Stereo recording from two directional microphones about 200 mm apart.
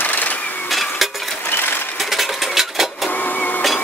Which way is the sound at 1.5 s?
10° left (ahead or behind).